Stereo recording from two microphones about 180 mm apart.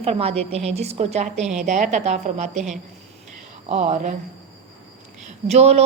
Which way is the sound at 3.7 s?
35° right (ahead or behind).